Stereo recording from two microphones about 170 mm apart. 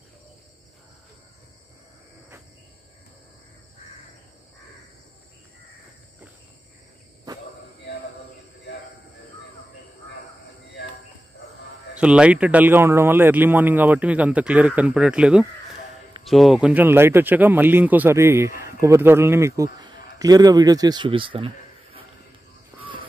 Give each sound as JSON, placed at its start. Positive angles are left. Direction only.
{"t": 11.9, "sound": "a man's voice", "side_deg": -5}